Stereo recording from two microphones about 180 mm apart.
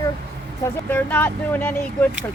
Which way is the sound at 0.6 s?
10° left (ahead or behind).